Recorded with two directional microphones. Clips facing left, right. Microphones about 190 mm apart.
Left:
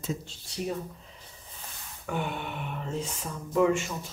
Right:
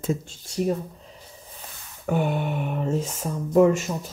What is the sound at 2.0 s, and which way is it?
Speech, 45° right (ahead or behind).